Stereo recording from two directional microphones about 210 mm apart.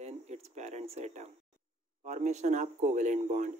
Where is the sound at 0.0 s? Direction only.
30° right (ahead or behind).